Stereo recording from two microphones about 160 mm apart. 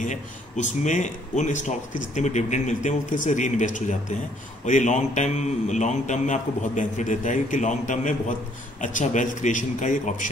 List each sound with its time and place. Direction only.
0.0 s speech: 50° left (ahead or behind)